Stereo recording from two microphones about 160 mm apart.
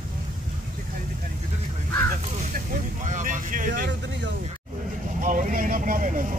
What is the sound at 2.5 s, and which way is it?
Vehicle, 55° right (ahead or behind).